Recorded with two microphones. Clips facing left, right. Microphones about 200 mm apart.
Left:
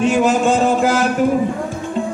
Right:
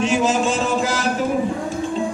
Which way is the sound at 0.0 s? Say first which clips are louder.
Left 4 dB; 60° left (ahead or behind).